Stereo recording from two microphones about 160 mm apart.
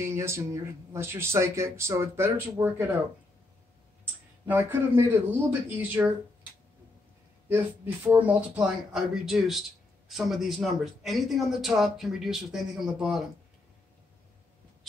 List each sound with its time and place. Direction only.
0.0 s speech: 15° right (ahead or behind)
4.5 s speech: 10° right (ahead or behind)
7.4 s speech: 15° right (ahead or behind)